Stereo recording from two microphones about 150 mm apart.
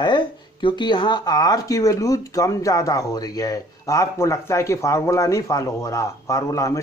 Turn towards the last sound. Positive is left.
turn(degrees=20)  # may be behind; listen again after turning